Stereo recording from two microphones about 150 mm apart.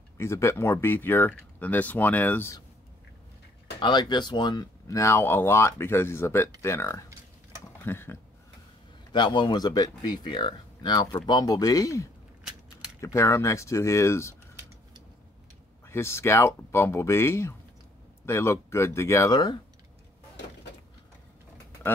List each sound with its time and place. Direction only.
0.2 s speech: 15° left (ahead or behind)
3.8 s speech: 30° left (ahead or behind)
9.1 s speech: 30° left (ahead or behind)
15.9 s speech: 15° left (ahead or behind)